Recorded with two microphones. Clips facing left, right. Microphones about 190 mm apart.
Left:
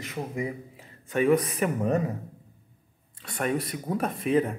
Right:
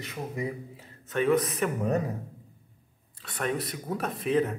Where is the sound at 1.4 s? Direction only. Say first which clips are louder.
Left 2 dB; centre (ahead or behind).